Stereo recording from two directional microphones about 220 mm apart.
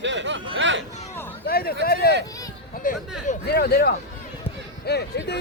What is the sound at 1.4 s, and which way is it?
Speech, 45° left (ahead or behind).